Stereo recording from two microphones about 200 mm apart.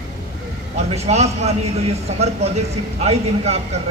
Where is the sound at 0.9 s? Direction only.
30° right (ahead or behind).